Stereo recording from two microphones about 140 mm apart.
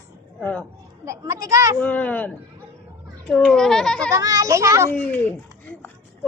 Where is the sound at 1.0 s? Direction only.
20° right (ahead or behind).